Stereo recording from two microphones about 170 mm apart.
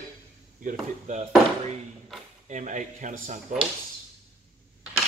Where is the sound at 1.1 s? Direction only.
40° right (ahead or behind).